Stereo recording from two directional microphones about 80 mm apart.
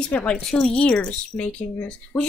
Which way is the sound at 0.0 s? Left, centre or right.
Centre.